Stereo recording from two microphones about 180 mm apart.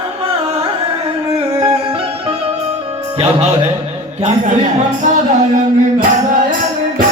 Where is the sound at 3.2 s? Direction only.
35° right (ahead or behind).